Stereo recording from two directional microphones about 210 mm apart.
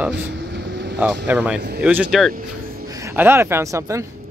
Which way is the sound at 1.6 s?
50° right (ahead or behind).